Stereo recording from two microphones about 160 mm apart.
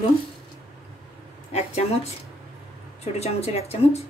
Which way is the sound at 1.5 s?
40° left (ahead or behind).